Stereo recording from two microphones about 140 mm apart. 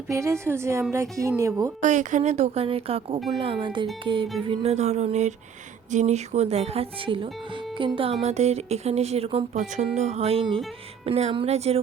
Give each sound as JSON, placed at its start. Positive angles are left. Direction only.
{"t": 0.1, "sound": "a woman's voice", "side_deg": -20}
{"t": 1.8, "sound": "speech", "side_deg": -60}